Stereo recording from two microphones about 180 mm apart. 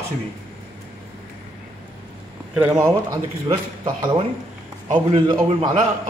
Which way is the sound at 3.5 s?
30° right (ahead or behind).